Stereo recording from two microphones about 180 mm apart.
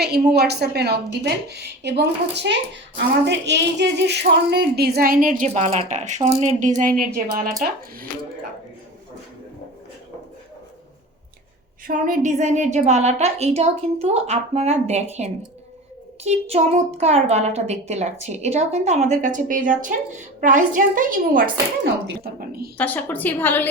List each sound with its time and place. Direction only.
0.0 s a woman's voice: 65° right (ahead or behind)
11.9 s a child's voice: 45° right (ahead or behind)
22.8 s a woman's voice: 10° left (ahead or behind)